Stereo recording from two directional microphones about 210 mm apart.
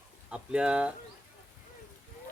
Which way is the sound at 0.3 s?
5° right (ahead or behind).